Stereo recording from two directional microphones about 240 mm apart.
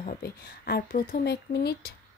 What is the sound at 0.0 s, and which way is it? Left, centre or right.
A woman's voice, left.